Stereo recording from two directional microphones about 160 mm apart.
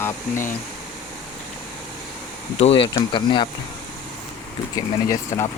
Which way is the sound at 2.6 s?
35° left (ahead or behind).